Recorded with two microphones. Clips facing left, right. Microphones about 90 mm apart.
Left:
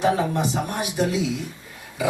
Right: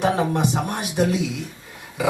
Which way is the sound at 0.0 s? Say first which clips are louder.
Right 1 dB; 50° right (ahead or behind).